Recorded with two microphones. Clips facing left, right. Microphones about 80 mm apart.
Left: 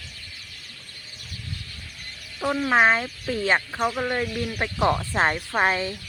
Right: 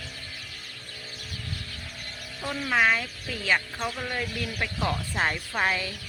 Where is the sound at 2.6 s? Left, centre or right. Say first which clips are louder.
Left 4 dB; left.